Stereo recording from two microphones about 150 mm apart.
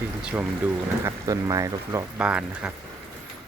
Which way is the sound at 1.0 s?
20° right (ahead or behind).